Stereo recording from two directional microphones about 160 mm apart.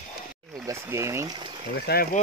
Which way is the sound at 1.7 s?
85° left.